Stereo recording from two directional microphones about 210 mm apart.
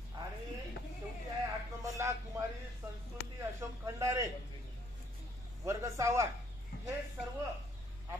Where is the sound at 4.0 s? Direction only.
15° right (ahead or behind).